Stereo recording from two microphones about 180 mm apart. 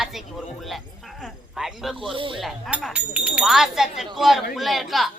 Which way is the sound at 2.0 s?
30° right (ahead or behind).